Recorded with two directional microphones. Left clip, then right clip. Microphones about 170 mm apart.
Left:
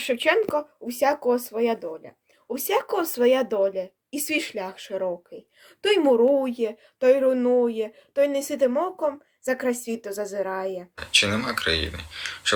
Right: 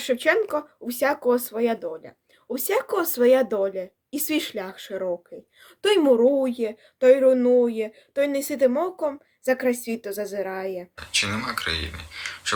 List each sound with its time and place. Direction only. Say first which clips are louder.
0.0 s speech: even; 20° right (ahead or behind)
10.9 s speech: left 5 dB; 15° left (ahead or behind)